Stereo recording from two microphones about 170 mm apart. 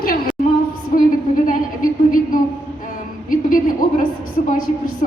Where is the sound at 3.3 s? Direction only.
50° left (ahead or behind).